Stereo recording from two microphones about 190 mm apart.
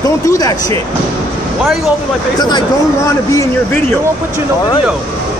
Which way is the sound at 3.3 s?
10° left (ahead or behind).